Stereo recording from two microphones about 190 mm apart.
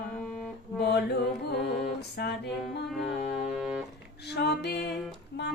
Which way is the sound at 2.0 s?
60° left (ahead or behind).